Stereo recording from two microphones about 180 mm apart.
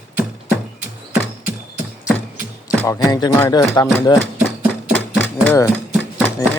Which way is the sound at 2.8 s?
15° left (ahead or behind).